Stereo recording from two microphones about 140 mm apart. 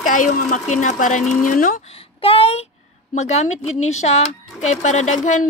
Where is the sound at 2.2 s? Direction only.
45° left (ahead or behind).